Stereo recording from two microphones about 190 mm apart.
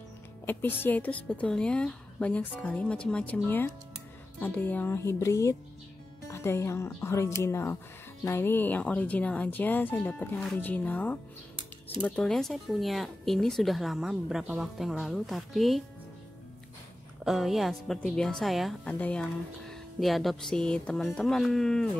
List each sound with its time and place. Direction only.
0.5 s speech: 10° left (ahead or behind)
17.2 s speech: centre (ahead or behind)